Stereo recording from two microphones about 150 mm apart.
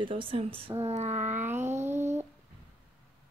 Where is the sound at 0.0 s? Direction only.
35° right (ahead or behind).